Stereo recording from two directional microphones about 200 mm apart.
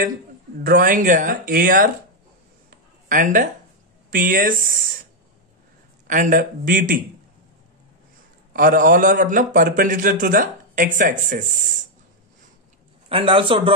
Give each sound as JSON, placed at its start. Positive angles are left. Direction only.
{"t": 0.7, "sound": "a man's voice", "side_deg": -45}
{"t": 2.7, "sound": "a sound", "side_deg": -40}
{"t": 4.1, "sound": "a man's voice", "side_deg": -45}
{"t": 6.0, "sound": "a man's voice", "side_deg": -40}
{"t": 8.5, "sound": "a man's voice", "side_deg": -45}
{"t": 13.1, "sound": "a man's voice", "side_deg": -25}